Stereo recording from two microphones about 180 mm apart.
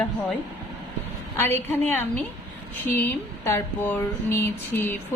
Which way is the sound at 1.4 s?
15° left (ahead or behind).